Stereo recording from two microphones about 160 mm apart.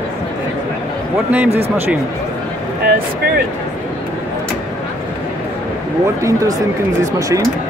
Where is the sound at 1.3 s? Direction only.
10° right (ahead or behind).